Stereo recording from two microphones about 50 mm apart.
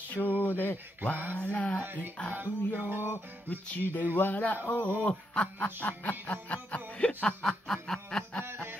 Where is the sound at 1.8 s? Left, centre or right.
Right.